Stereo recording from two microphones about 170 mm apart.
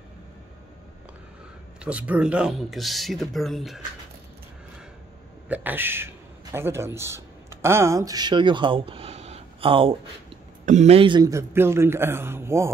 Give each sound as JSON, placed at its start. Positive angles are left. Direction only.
{"t": 1.9, "sound": "speech", "side_deg": -5}
{"t": 5.5, "sound": "a man's voice", "side_deg": -10}
{"t": 10.6, "sound": "a man's voice", "side_deg": -45}